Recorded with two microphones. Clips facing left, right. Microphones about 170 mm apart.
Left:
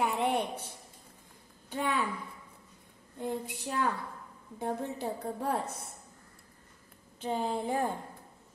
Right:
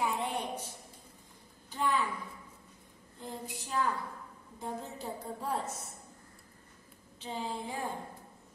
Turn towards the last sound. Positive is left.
turn(degrees=55)  # may be behind; listen again after turning